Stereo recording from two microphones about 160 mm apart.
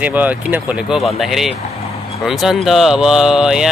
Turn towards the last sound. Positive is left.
turn(degrees=-5)  # may be behind; listen again after turning